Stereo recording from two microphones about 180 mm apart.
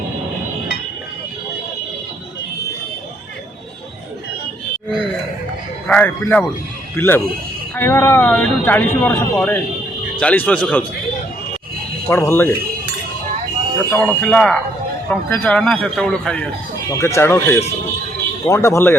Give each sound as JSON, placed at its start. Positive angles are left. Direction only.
{"t": 5.9, "sound": "speech", "side_deg": 10}
{"t": 12.0, "sound": "speech", "side_deg": 15}
{"t": 13.9, "sound": "a man's voice", "side_deg": 10}
{"t": 16.9, "sound": "speech", "side_deg": 15}